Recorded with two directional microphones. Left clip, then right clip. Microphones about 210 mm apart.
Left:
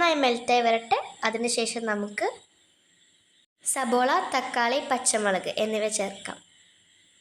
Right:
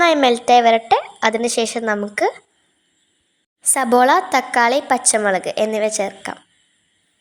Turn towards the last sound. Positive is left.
turn(degrees=-25)  # may be behind; listen again after turning